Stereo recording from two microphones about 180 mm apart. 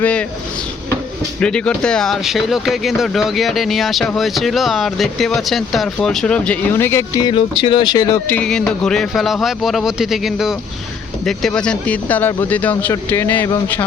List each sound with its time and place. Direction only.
0.0 s speech: 5° left (ahead or behind)
1.4 s speech: 5° left (ahead or behind)
7.3 s speech: 30° left (ahead or behind)
8.3 s speech: 5° left (ahead or behind)